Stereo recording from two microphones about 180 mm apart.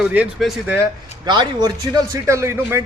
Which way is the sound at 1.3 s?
25° right (ahead or behind).